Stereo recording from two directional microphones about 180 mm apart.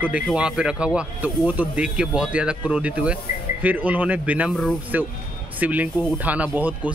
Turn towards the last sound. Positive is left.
turn(degrees=-10)  # may be behind; listen again after turning